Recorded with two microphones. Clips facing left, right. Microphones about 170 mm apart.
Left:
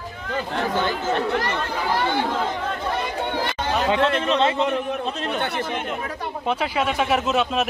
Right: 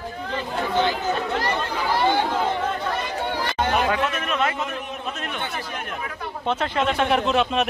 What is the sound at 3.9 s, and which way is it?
Speech, 25° left (ahead or behind).